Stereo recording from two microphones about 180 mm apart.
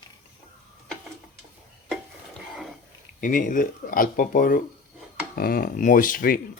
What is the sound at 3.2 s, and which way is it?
Speech, 45° left (ahead or behind).